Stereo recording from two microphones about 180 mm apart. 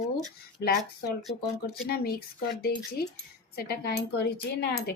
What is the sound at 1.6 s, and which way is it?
Speech, 55° left (ahead or behind).